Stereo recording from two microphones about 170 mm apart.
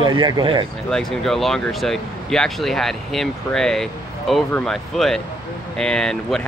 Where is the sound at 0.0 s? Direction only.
25° right (ahead or behind).